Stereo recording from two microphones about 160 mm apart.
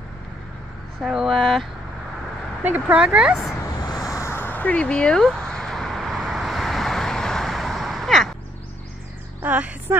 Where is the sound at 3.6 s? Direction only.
25° left (ahead or behind).